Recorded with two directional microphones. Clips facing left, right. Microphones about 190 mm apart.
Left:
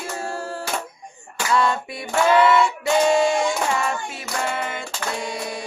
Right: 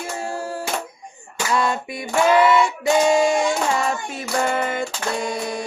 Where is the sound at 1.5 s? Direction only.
20° right (ahead or behind).